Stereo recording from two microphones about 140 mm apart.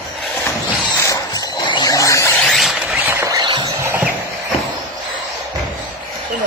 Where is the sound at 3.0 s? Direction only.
20° right (ahead or behind).